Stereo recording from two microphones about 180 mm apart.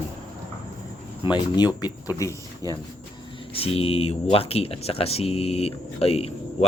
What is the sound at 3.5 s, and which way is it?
Speech, 30° left (ahead or behind).